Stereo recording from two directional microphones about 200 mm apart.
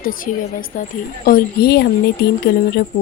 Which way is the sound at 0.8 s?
45° left (ahead or behind).